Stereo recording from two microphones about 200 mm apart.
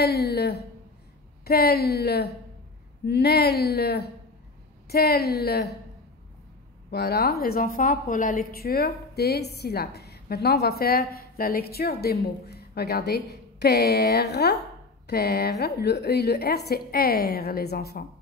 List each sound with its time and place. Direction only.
0.0 s a woman's voice: 50° left (ahead or behind)
6.9 s a woman's voice: 50° left (ahead or behind)